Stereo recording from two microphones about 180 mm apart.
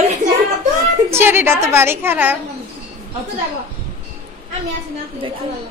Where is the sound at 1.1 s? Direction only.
15° right (ahead or behind).